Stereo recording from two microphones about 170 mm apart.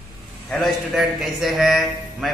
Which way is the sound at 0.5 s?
Centre (ahead or behind).